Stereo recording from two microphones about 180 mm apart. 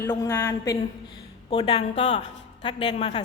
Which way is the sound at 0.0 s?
15° left (ahead or behind).